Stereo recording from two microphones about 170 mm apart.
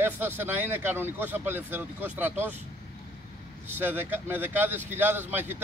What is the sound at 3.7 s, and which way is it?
Speech, 10° right (ahead or behind).